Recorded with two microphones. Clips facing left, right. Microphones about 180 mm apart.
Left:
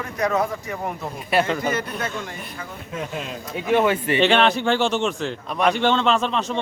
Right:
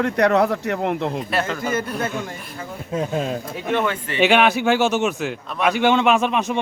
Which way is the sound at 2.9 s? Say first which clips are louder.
Right 7 dB; 35° right (ahead or behind).